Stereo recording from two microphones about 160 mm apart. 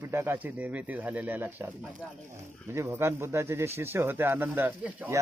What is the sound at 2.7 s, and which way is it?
Speech, 15° right (ahead or behind).